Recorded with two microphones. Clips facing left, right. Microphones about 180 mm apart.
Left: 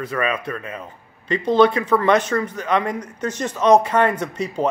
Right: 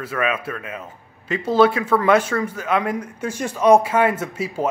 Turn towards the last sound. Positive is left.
turn(degrees=-5)  # may be behind; listen again after turning